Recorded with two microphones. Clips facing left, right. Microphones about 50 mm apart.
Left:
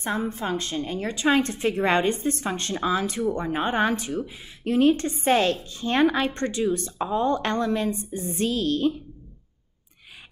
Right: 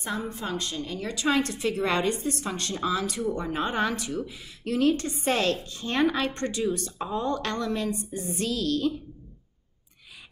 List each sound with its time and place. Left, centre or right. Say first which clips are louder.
0.0 s a woman's voice: left 4 dB; left